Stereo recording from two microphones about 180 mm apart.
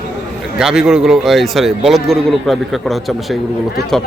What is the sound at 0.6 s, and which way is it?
Speech, centre (ahead or behind).